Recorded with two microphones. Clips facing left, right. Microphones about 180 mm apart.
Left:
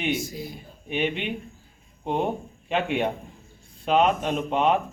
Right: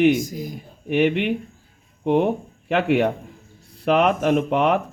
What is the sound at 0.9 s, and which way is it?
Speech, 65° right (ahead or behind).